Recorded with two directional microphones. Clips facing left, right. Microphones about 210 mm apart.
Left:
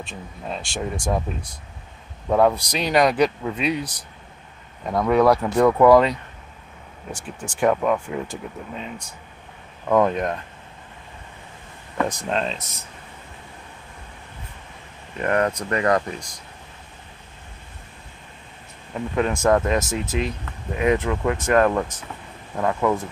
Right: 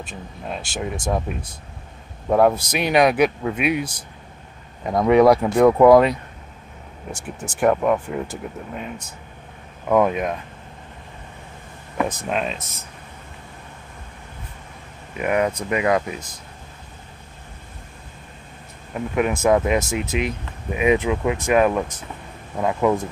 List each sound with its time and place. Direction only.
0.0 s speech: 5° right (ahead or behind)
2.2 s speech: 10° right (ahead or behind)
4.8 s speech: 15° right (ahead or behind)
12.2 s speech: 10° right (ahead or behind)
15.1 s speech: 10° right (ahead or behind)
18.9 s speech: 10° right (ahead or behind)